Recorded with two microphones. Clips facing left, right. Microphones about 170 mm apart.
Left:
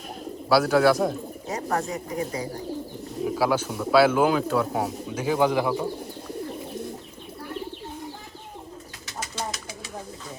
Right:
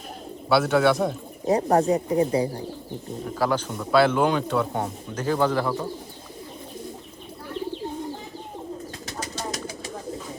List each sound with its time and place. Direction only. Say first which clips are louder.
0.5 s speech: left 1 dB; centre (ahead or behind)
1.5 s speech: right 9 dB; 35° right (ahead or behind)
3.2 s speech: left 1 dB; 5° left (ahead or behind)
9.2 s bird: even; 40° right (ahead or behind)